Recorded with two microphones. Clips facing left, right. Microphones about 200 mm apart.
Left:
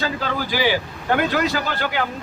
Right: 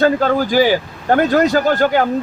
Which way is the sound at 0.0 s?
50° right (ahead or behind).